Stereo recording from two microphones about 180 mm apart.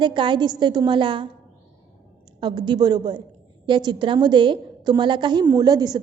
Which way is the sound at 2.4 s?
25° right (ahead or behind).